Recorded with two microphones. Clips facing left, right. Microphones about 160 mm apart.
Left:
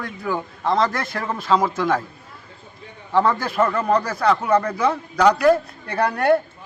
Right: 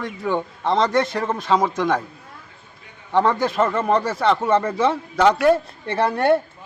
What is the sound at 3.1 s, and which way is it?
Speech, 20° right (ahead or behind).